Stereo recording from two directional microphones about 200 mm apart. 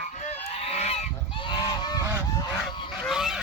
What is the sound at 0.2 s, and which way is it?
Goose, 30° left (ahead or behind).